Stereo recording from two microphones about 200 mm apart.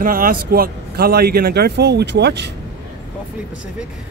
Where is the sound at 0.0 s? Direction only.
45° right (ahead or behind).